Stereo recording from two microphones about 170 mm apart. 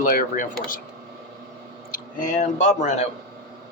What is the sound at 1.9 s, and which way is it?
Speech, 45° left (ahead or behind).